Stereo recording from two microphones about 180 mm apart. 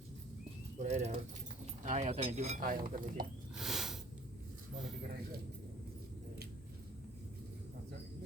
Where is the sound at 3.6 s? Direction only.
Centre (ahead or behind).